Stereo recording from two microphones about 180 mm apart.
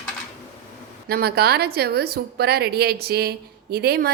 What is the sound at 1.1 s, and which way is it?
A woman's voice, 60° right (ahead or behind).